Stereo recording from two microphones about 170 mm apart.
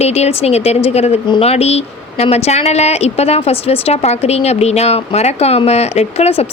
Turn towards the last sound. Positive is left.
turn(degrees=35)  # may be behind; listen again after turning